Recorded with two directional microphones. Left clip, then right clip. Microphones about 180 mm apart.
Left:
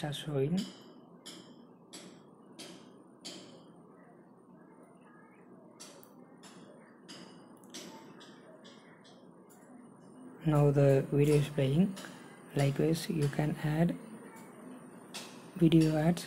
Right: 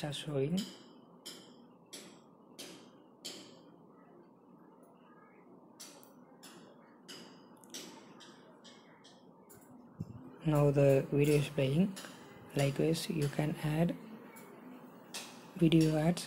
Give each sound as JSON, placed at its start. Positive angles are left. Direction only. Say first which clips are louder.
{"t": 0.0, "sound": "speech", "louder": "left 2 dB", "side_deg": -10}
{"t": 10.4, "sound": "speech", "louder": "left 1 dB", "side_deg": -10}
{"t": 15.5, "sound": "speech", "louder": "left 2 dB", "side_deg": -10}